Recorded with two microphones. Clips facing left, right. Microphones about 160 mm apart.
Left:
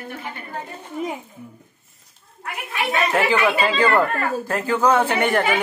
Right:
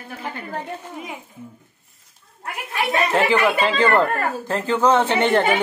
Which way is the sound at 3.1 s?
20° right (ahead or behind).